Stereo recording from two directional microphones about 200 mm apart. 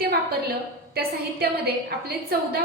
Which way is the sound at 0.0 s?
50° right (ahead or behind).